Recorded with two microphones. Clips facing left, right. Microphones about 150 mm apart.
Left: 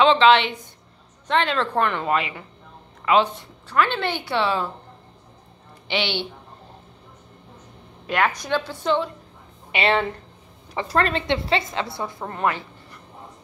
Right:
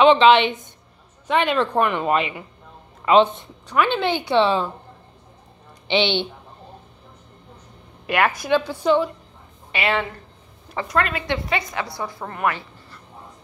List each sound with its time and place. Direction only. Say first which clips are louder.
0.0 s a woman's voice: right 2 dB; 15° right (ahead or behind)
5.9 s a woman's voice: right 5 dB; 25° right (ahead or behind)
8.4 s a woman's voice: right 5 dB; 15° right (ahead or behind)
9.7 s a woman's voice: left 2 dB; 30° left (ahead or behind)